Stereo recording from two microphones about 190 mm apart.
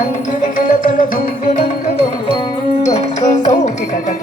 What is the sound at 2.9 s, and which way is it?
Music, 40° left (ahead or behind).